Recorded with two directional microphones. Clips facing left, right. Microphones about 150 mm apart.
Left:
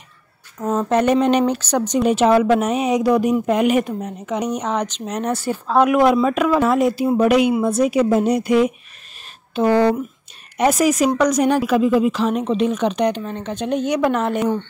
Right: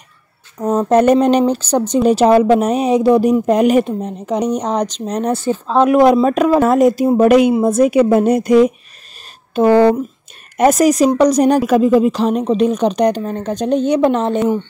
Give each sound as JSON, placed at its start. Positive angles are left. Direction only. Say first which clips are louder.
{"t": 0.7, "sound": "speech", "louder": "right 5 dB", "side_deg": -40}
{"t": 1.4, "sound": "speech", "louder": "right 4 dB", "side_deg": -30}
{"t": 5.9, "sound": "speech", "louder": "right 7 dB", "side_deg": -35}